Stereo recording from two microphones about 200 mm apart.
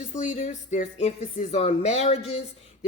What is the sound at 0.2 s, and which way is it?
A woman's voice, 35° left (ahead or behind).